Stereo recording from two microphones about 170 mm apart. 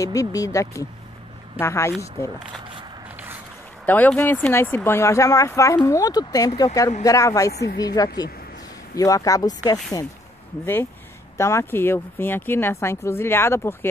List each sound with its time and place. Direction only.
0.0 s speech: 20° left (ahead or behind)
3.8 s speech: 10° left (ahead or behind)
7.5 s a woman's voice: 80° left
7.8 s speech: 20° left (ahead or behind)